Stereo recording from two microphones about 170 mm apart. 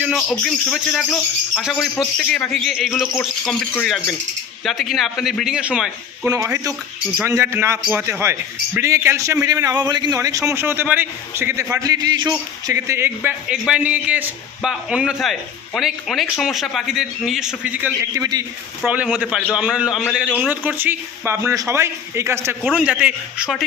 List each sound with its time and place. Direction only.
0.0 s a man's voice: centre (ahead or behind)
6.2 s a man's voice: 15° right (ahead or behind)
18.2 s a man's voice: 20° right (ahead or behind)
18.8 s a man's voice: 5° right (ahead or behind)